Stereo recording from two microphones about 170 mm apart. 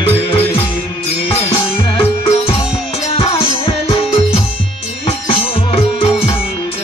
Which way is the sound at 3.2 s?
35° left (ahead or behind).